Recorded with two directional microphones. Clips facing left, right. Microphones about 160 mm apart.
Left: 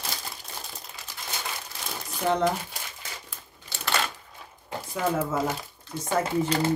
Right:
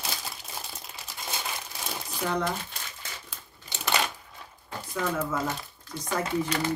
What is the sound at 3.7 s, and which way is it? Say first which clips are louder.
Typewriter: even; 15° right (ahead or behind).